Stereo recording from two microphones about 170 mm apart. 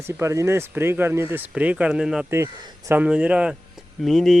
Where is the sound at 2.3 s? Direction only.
15° right (ahead or behind).